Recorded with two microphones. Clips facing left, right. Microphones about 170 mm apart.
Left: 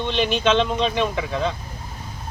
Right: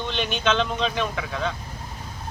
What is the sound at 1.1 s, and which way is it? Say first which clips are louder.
Speech: left 4 dB; 30° left (ahead or behind).